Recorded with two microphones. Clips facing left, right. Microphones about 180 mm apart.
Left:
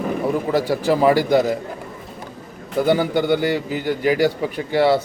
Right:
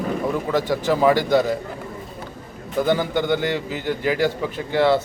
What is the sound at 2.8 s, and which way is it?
A man's voice, 10° left (ahead or behind).